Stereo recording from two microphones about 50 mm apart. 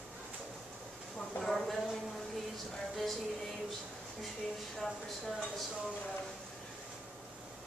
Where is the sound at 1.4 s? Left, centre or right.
Centre.